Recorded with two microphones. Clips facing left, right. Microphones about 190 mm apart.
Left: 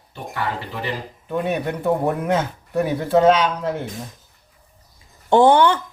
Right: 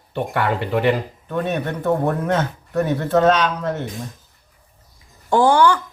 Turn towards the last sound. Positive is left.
turn(degrees=20)  # may be behind; listen again after turning